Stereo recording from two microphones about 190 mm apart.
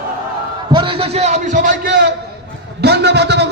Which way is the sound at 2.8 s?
60° right (ahead or behind).